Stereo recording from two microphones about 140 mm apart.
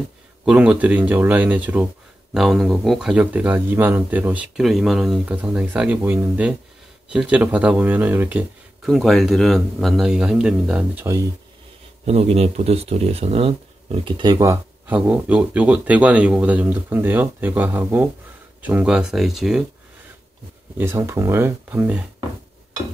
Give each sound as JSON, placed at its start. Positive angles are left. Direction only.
{"t": 0.5, "sound": "speech", "side_deg": -10}
{"t": 8.8, "sound": "speech", "side_deg": 0}
{"t": 12.1, "sound": "speech", "side_deg": -45}
{"t": 20.7, "sound": "speech", "side_deg": -15}